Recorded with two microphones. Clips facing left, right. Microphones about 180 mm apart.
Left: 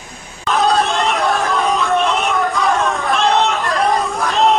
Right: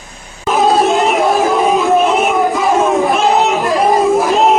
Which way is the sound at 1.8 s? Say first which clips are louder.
Right 5 dB; 5° right (ahead or behind).